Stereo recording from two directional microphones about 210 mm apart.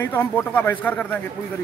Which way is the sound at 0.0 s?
10° left (ahead or behind).